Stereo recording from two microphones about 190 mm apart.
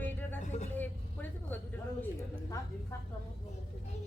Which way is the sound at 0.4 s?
35° left (ahead or behind).